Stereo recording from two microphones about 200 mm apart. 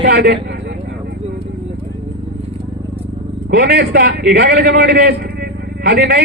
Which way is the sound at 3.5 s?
55° right (ahead or behind).